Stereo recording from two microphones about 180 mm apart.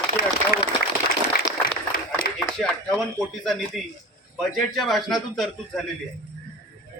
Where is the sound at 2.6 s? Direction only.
5° left (ahead or behind).